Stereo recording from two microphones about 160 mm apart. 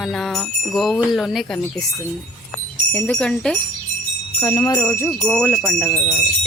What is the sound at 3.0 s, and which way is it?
Jingle bell, 5° left (ahead or behind).